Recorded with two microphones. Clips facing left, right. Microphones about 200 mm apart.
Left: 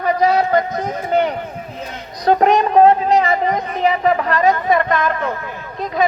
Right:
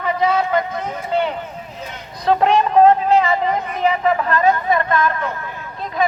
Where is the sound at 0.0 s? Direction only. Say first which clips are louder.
Left 3 dB; 40° left (ahead or behind).